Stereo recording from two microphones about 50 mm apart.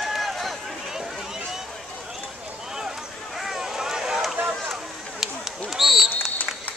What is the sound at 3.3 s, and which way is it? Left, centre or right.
Vehicle, centre.